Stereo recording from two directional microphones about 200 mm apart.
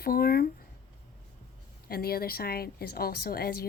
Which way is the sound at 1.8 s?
50° left (ahead or behind).